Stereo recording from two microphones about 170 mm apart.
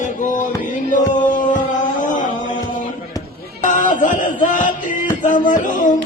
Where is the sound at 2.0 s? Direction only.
50° left (ahead or behind).